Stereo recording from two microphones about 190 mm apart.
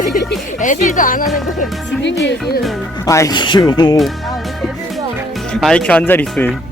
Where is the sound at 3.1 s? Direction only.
15° left (ahead or behind).